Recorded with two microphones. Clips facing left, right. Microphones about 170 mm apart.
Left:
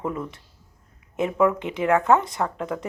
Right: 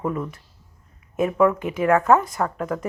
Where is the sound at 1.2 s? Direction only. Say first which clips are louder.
Right 2 dB; 20° left (ahead or behind).